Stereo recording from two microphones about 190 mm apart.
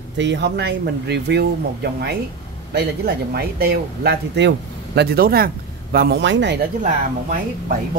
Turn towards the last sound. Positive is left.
turn(degrees=-40)  # may be behind; listen again after turning